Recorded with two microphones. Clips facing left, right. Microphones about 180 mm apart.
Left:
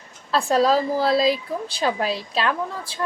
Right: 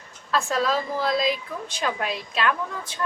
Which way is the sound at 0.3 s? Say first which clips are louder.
Left 5 dB; 35° left (ahead or behind).